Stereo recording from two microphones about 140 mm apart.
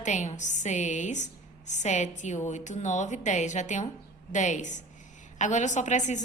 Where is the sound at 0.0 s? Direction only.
60° left (ahead or behind).